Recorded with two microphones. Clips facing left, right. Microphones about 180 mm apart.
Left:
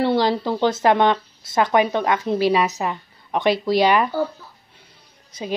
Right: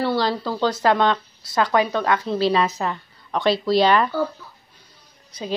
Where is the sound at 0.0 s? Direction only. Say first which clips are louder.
Left 3 dB; 20° left (ahead or behind).